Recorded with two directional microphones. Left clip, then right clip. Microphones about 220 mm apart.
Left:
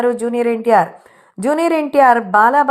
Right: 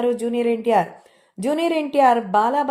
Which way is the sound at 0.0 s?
10° left (ahead or behind).